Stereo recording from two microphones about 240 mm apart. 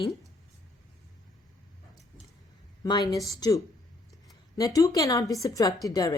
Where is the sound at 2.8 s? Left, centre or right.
Centre.